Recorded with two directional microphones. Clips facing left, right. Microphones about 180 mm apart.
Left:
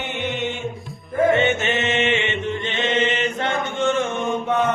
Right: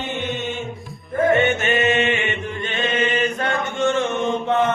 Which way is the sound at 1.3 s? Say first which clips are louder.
Even; 25° left (ahead or behind).